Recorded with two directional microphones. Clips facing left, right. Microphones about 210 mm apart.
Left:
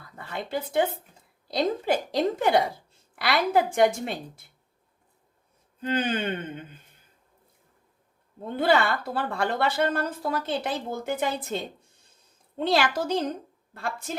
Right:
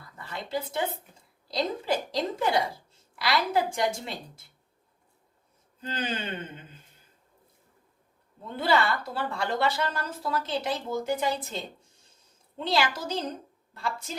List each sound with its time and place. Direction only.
0.3 s a woman's voice: 55° left (ahead or behind)
5.8 s a woman's voice: 55° left (ahead or behind)
8.5 s a woman's voice: 55° left (ahead or behind)
12.5 s a woman's voice: 55° left (ahead or behind)